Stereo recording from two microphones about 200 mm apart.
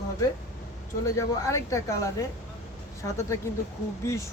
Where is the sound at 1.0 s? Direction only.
15° left (ahead or behind).